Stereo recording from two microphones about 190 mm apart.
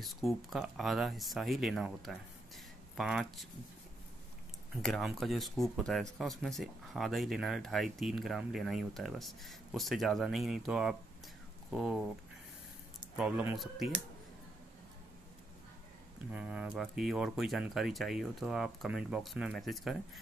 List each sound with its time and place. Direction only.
0.0 s speech: centre (ahead or behind)
4.8 s speech: centre (ahead or behind)
16.3 s speech: 5° right (ahead or behind)